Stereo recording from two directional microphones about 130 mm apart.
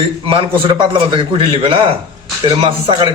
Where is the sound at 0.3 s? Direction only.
40° right (ahead or behind).